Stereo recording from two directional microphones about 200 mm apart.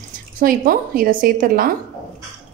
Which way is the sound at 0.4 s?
45° right (ahead or behind).